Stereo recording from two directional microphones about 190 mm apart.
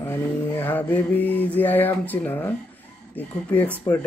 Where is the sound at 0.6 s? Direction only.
10° left (ahead or behind).